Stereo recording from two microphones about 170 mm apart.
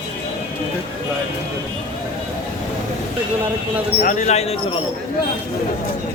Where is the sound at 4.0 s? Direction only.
45° left (ahead or behind).